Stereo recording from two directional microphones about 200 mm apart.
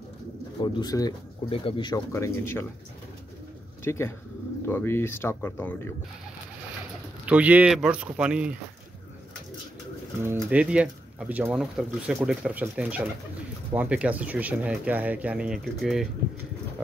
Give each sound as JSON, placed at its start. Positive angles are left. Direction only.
{"t": 0.6, "sound": "speech", "side_deg": 20}
{"t": 3.8, "sound": "speech", "side_deg": 15}
{"t": 7.2, "sound": "speech", "side_deg": -5}
{"t": 10.2, "sound": "speech", "side_deg": -10}